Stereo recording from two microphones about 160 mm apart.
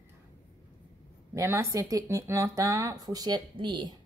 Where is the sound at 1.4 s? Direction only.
15° right (ahead or behind).